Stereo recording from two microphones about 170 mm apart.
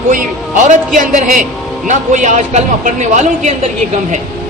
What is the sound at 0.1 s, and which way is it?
A woman's voice, 50° right (ahead or behind).